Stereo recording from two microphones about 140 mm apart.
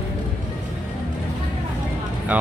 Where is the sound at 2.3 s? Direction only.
10° right (ahead or behind).